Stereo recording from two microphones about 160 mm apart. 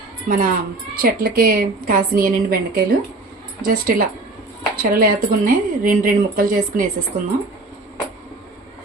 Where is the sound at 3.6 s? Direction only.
60° right (ahead or behind).